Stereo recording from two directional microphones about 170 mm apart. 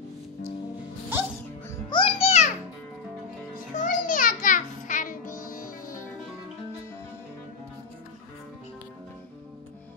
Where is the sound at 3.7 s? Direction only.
50° left (ahead or behind).